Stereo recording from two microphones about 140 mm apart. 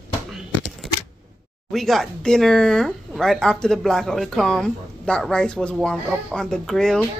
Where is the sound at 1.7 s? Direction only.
Centre (ahead or behind).